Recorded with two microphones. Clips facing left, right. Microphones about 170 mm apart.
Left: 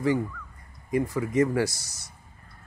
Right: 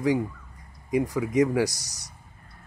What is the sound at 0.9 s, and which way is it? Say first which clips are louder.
Speech: right 1 dB; 15° right (ahead or behind).